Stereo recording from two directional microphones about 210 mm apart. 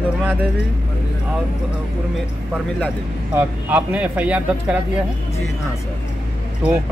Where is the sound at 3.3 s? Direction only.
10° right (ahead or behind).